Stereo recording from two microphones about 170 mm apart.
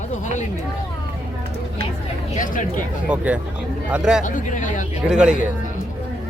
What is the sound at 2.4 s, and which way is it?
Speech, 50° left (ahead or behind).